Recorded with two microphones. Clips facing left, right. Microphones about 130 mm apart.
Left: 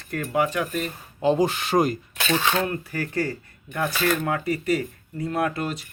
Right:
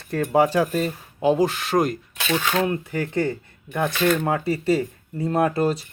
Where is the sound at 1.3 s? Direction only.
Centre (ahead or behind).